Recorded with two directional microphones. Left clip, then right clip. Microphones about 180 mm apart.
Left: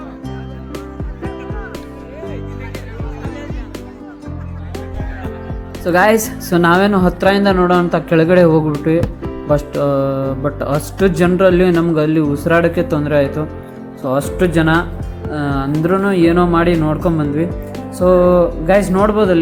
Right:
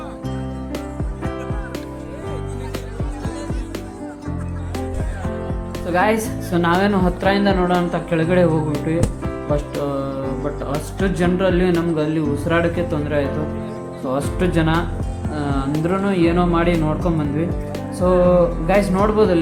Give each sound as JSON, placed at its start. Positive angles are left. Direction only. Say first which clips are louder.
{"t": 5.8, "sound": "a woman's voice", "louder": "left 6 dB", "side_deg": 30}
{"t": 8.9, "sound": "music", "louder": "left 8 dB", "side_deg": 30}
{"t": 9.8, "sound": "a woman's voice", "louder": "left 8 dB", "side_deg": 30}
{"t": 15.3, "sound": "music", "louder": "left 5 dB", "side_deg": 15}
{"t": 16.0, "sound": "speech", "louder": "left 5 dB", "side_deg": 15}